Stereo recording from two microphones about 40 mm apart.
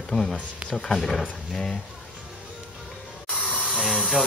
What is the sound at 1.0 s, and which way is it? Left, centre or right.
Speech, centre.